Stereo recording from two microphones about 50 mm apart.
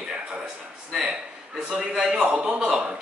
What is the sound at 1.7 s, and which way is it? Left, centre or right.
Speech, centre.